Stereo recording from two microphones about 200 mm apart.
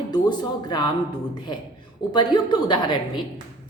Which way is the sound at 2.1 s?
20° left (ahead or behind).